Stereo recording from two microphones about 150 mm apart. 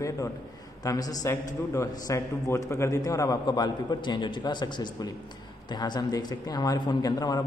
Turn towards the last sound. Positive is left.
turn(degrees=25)  # may be behind; listen again after turning